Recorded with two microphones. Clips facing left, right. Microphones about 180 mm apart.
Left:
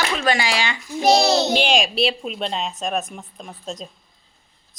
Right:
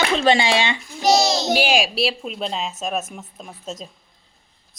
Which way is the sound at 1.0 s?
60° left (ahead or behind).